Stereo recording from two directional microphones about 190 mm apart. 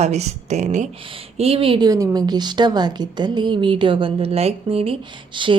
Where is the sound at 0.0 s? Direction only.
35° right (ahead or behind).